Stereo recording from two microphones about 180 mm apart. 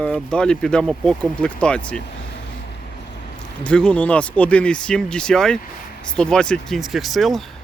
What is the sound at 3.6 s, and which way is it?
Speech, 5° left (ahead or behind).